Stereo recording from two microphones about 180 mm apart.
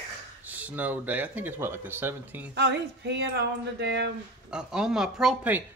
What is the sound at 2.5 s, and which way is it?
Speech, 70° right (ahead or behind).